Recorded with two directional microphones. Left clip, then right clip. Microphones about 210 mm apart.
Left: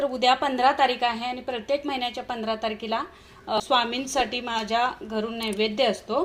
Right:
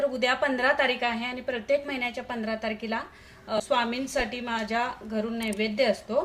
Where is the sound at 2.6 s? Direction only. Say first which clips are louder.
Left 3 dB; centre (ahead or behind).